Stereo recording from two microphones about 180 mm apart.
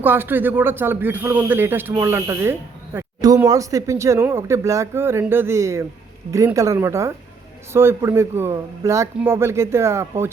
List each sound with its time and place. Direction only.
0.0 s speech: 10° right (ahead or behind)